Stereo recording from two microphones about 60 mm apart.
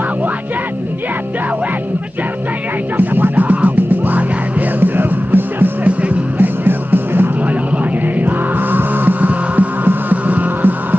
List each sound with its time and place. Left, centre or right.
3.0 s music: right
5.9 s music: right
8.3 s music: right